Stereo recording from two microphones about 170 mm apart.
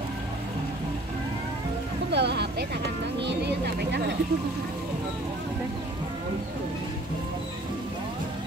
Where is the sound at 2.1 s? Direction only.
80° right.